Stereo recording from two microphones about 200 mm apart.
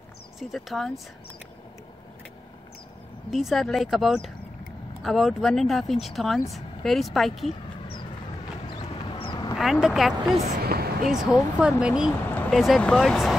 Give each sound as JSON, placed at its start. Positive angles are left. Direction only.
{"t": 0.4, "sound": "speech", "side_deg": 0}
{"t": 3.3, "sound": "speech", "side_deg": 0}
{"t": 8.6, "sound": "a sound", "side_deg": 25}
{"t": 9.6, "sound": "speech", "side_deg": 0}
{"t": 10.7, "sound": "a sound", "side_deg": -50}
{"t": 11.6, "sound": "speech", "side_deg": -5}